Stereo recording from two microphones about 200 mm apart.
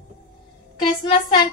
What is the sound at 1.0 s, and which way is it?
Speech, 20° left (ahead or behind).